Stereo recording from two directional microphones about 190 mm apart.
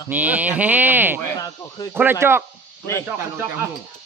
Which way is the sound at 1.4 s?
20° left (ahead or behind).